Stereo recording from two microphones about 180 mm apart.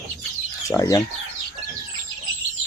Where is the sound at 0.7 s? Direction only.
20° left (ahead or behind).